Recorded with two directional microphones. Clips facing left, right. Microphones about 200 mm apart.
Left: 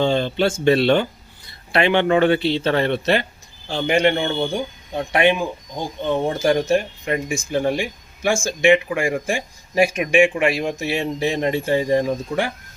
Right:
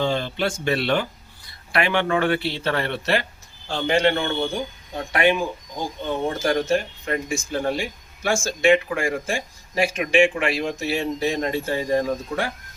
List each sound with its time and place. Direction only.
0.0 s speech: 25° left (ahead or behind)